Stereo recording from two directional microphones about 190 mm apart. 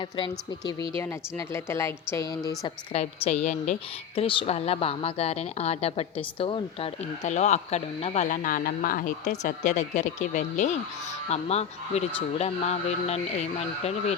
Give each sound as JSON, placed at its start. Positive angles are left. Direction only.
{"t": 1.5, "sound": "a woman's voice", "side_deg": 15}
{"t": 2.9, "sound": "speech", "side_deg": 35}